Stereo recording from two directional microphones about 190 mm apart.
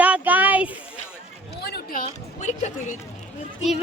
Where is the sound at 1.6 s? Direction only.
50° left (ahead or behind).